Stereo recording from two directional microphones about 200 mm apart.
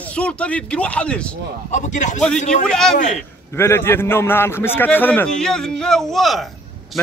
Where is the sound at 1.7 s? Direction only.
35° left (ahead or behind).